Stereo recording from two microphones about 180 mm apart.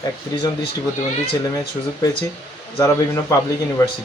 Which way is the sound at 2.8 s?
15° left (ahead or behind).